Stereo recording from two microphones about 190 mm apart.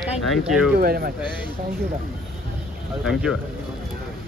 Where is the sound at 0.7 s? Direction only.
50° right (ahead or behind).